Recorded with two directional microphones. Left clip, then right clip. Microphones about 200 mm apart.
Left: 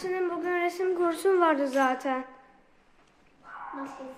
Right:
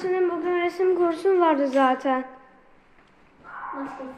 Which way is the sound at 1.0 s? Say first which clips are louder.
Right 1 dB; 15° left (ahead or behind).